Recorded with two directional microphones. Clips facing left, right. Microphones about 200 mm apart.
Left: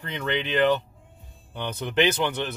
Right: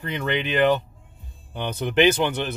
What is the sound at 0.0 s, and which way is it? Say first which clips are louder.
Speech: right 3 dB; 10° right (ahead or behind).